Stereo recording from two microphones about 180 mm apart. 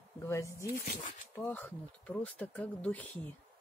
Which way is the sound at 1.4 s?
10° left (ahead or behind).